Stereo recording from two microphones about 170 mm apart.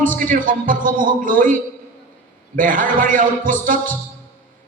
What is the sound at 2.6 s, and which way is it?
A man's voice, 50° right (ahead or behind).